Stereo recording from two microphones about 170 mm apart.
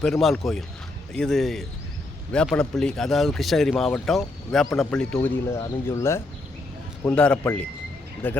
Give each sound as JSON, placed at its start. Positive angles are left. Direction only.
{"t": 0.0, "sound": "speech", "side_deg": 0}